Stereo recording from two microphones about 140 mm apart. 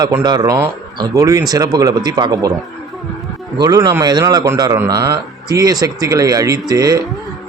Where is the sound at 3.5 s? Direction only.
25° right (ahead or behind).